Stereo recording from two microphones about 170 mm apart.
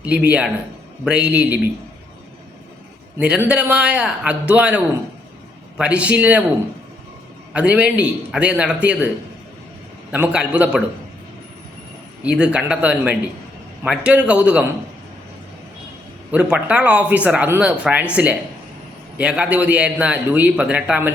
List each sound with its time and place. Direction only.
0.0 s a man's voice: 10° right (ahead or behind)
3.2 s a man's voice: 5° right (ahead or behind)
7.5 s a man's voice: 5° right (ahead or behind)
10.1 s a man's voice: 10° right (ahead or behind)
12.2 s a man's voice: 5° right (ahead or behind)
16.3 s a man's voice: 10° right (ahead or behind)